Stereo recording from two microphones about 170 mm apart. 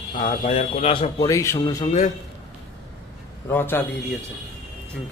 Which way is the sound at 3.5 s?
15° left (ahead or behind).